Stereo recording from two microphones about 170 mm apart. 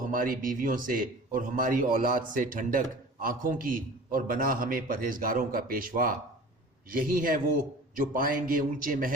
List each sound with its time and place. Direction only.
0.1 s a man's voice: 55° right (ahead or behind)